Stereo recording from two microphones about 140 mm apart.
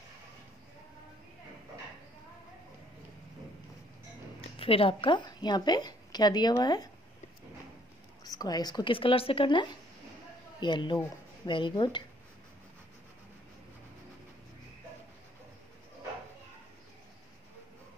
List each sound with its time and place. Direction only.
4.6 s a woman's voice: 40° left (ahead or behind)
8.2 s speech: 25° left (ahead or behind)